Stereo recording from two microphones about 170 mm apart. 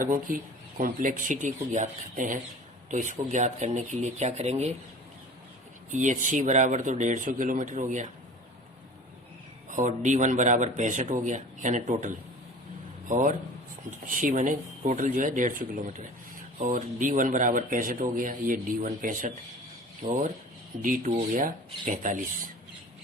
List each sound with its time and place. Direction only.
0.0 s speech: 55° right (ahead or behind)
5.9 s speech: 45° right (ahead or behind)
9.6 s speech: 50° right (ahead or behind)